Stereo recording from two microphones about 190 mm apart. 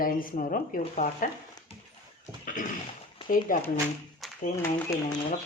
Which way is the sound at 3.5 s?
45° left (ahead or behind).